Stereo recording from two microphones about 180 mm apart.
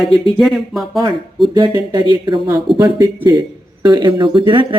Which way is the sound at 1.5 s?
25° right (ahead or behind).